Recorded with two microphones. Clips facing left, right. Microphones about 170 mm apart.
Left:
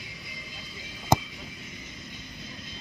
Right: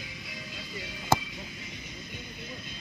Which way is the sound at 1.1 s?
15° left (ahead or behind).